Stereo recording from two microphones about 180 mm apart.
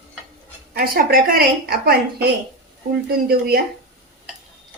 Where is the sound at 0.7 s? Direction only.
55° right (ahead or behind).